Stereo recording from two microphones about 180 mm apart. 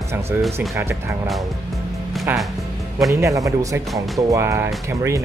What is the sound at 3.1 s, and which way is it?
Speech, 15° right (ahead or behind).